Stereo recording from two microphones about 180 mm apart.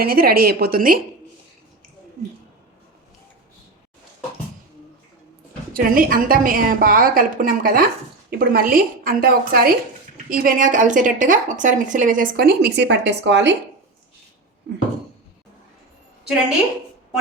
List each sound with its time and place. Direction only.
0.0 s speech: 55° right (ahead or behind)
5.7 s speech: 50° right (ahead or behind); by 13.6 s 75° right (ahead or behind)